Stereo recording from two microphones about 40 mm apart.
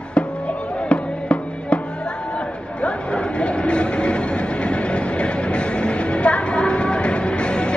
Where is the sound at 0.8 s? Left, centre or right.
Left.